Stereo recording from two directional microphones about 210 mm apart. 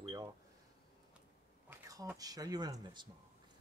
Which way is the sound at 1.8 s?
15° right (ahead or behind).